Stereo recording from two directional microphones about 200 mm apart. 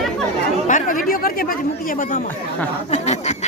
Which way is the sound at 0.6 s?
40° left (ahead or behind).